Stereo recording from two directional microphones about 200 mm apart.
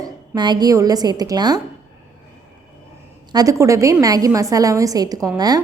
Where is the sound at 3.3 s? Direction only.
15° right (ahead or behind).